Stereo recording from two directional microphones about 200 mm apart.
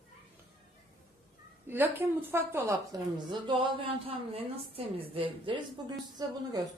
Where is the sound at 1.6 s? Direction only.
10° right (ahead or behind).